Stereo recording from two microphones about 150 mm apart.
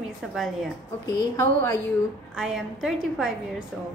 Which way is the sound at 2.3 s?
5° right (ahead or behind).